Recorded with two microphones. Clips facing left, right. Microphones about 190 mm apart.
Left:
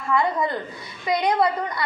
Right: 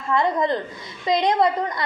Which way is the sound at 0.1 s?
20° right (ahead or behind).